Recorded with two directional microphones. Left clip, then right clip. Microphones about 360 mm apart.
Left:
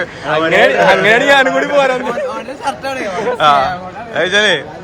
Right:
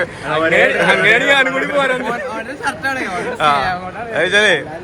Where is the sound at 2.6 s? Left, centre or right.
Centre.